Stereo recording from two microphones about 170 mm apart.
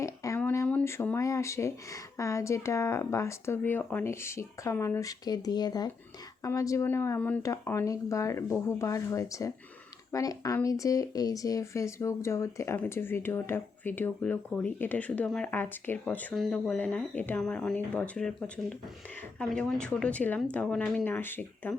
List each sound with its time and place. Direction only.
0.0 s speech: 20° left (ahead or behind)